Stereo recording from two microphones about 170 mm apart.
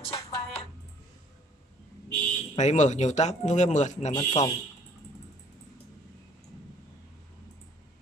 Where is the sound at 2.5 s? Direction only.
45° left (ahead or behind).